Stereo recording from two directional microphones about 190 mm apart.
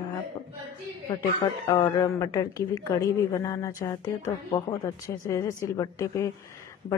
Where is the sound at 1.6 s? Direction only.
20° left (ahead or behind).